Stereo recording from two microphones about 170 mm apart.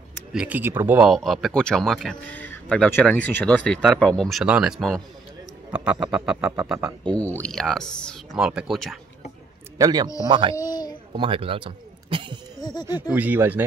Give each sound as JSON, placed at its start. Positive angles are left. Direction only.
{"t": 0.3, "sound": "speech", "side_deg": -5}
{"t": 1.1, "sound": "speech", "side_deg": 0}
{"t": 7.1, "sound": "speech", "side_deg": 10}
{"t": 9.8, "sound": "a man's voice", "side_deg": -25}
{"t": 10.5, "sound": "a sound", "side_deg": 20}
{"t": 11.1, "sound": "speech", "side_deg": -30}
{"t": 13.1, "sound": "speech", "side_deg": -10}